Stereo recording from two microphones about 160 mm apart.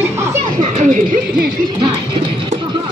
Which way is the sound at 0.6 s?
50° right (ahead or behind).